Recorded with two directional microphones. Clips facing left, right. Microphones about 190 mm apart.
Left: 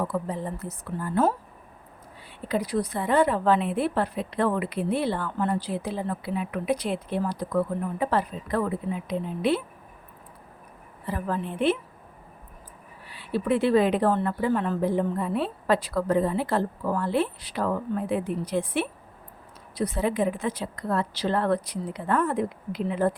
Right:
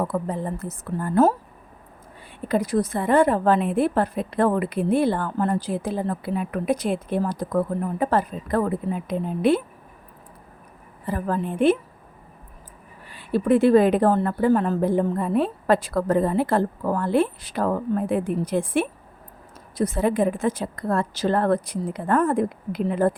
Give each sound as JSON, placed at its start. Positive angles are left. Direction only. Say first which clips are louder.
{"t": 0.0, "sound": "a woman's voice", "louder": "right 3 dB", "side_deg": -50}
{"t": 2.5, "sound": "a woman's voice", "louder": "right 4 dB", "side_deg": -45}
{"t": 11.0, "sound": "a woman's voice", "louder": "right 4 dB", "side_deg": -45}
{"t": 13.1, "sound": "a woman's voice", "louder": "right 5 dB", "side_deg": -45}